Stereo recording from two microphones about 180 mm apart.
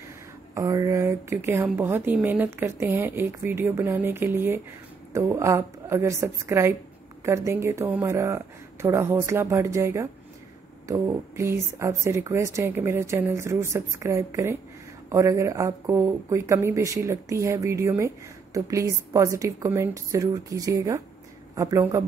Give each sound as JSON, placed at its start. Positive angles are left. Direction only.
{"t": 0.6, "sound": "speech", "side_deg": -15}